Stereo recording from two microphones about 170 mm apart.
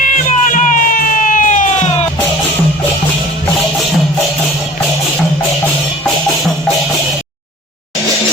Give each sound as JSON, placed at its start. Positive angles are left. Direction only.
{"t": 0.0, "sound": "music", "side_deg": 50}